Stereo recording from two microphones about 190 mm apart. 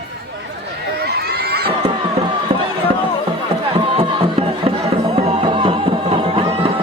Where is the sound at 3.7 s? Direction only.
25° right (ahead or behind).